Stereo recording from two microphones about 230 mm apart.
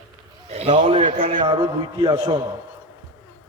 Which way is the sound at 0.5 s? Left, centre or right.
Right.